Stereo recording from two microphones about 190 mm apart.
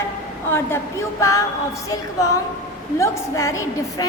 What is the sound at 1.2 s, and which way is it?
Speech, 15° left (ahead or behind).